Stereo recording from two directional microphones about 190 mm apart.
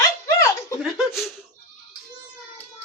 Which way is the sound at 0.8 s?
5° right (ahead or behind).